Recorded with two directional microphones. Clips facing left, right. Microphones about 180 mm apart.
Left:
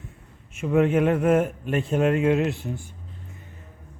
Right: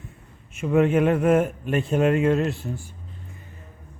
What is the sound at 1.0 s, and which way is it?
Speech, 45° right (ahead or behind).